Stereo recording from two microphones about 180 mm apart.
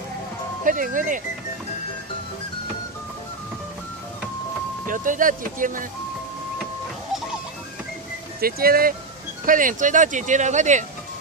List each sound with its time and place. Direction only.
0.7 s speech: 45° right (ahead or behind)
4.8 s speech: 45° right (ahead or behind)
8.4 s speech: 55° right (ahead or behind)